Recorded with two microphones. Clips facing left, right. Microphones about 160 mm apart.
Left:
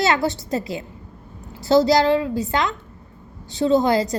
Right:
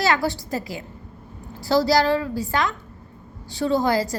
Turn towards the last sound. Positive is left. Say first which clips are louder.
# left 3 dB
turn(degrees=20)  # may be behind; listen again after turning